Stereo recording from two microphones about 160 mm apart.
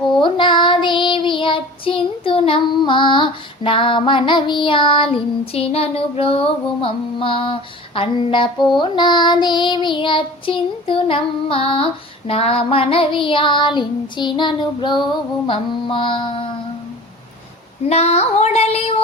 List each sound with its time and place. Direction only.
0.2 s child singing: 30° left (ahead or behind)
17.8 s child singing: 40° left (ahead or behind)